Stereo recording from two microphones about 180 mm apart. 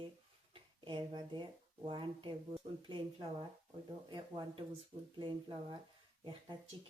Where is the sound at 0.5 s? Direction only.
25° right (ahead or behind).